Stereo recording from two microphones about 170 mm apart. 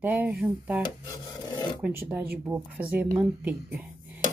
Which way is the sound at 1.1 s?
25° left (ahead or behind).